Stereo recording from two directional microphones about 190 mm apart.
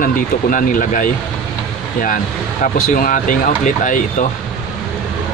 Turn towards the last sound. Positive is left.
turn(degrees=45)  # may be behind; listen again after turning